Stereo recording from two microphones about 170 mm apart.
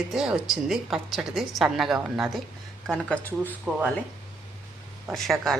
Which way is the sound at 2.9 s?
5° left (ahead or behind).